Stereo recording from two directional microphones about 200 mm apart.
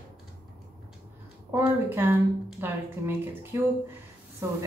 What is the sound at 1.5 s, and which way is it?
A woman's voice, 10° right (ahead or behind).